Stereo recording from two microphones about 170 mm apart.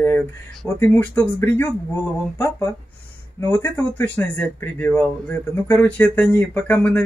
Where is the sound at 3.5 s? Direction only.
10° left (ahead or behind).